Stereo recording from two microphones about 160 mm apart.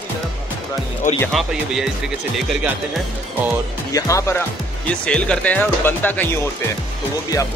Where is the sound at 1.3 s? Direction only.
Centre (ahead or behind).